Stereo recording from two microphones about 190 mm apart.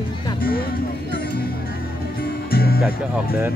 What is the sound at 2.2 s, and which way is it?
Music, 55° left (ahead or behind).